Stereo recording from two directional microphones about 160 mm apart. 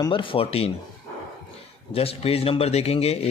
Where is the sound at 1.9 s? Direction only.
40° left (ahead or behind).